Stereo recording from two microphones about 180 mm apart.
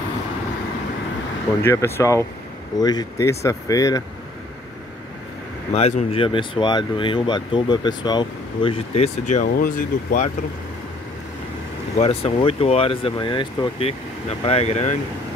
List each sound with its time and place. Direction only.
1.6 s speech: 15° left (ahead or behind)
5.7 s speech: 35° left (ahead or behind)
12.0 s speech: 35° left (ahead or behind)